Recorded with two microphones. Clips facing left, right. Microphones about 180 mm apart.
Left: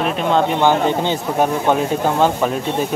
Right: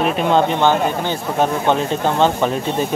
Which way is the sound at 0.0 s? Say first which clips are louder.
Right 1 dB; centre (ahead or behind).